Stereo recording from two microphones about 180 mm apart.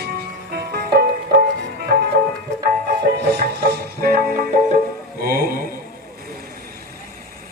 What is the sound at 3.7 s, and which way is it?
Music, 55° right (ahead or behind).